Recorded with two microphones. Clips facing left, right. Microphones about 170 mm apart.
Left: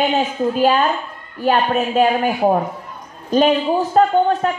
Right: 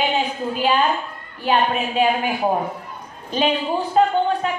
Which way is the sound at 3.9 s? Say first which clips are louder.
Left 2 dB; 45° left (ahead or behind).